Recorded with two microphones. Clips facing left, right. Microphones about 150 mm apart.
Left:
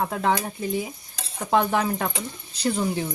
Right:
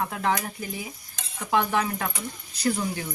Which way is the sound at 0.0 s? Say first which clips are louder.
Left 3 dB; 30° left (ahead or behind).